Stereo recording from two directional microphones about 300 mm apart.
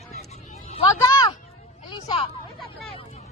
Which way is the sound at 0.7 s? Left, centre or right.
Centre.